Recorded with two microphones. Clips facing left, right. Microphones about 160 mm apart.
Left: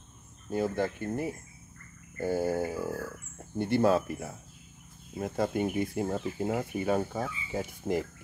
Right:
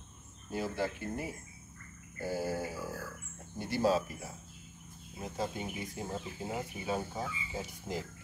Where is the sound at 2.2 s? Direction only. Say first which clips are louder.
Left 6 dB; 50° left (ahead or behind).